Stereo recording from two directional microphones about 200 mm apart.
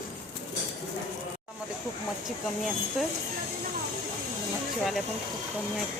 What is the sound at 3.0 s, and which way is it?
Speech, 5° right (ahead or behind).